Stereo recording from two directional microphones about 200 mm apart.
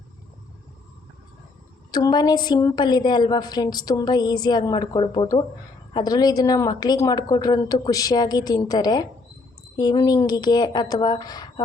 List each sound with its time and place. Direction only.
1.9 s a woman's voice: 20° left (ahead or behind)